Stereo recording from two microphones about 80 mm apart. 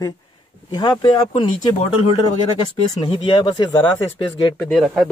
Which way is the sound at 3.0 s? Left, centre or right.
Left.